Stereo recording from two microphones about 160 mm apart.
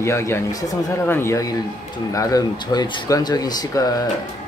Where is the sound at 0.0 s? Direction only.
15° left (ahead or behind).